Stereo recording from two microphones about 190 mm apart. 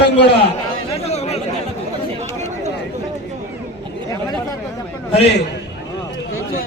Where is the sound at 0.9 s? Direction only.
35° left (ahead or behind).